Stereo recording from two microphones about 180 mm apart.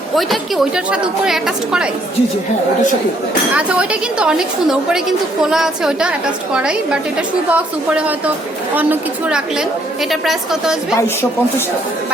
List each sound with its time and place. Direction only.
0.2 s a woman's voice: centre (ahead or behind)
3.5 s a woman's voice: 5° right (ahead or behind)